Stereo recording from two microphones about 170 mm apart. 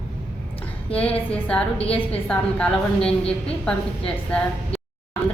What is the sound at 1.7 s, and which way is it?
Speech, 35° left (ahead or behind).